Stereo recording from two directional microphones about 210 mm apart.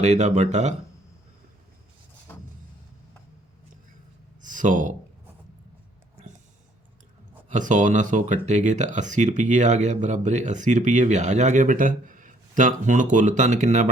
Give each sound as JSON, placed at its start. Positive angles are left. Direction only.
{"t": 0.0, "sound": "speech", "side_deg": -35}
{"t": 2.3, "sound": "vehicle", "side_deg": 10}
{"t": 4.4, "sound": "a sound", "side_deg": -40}
{"t": 7.5, "sound": "speech", "side_deg": -35}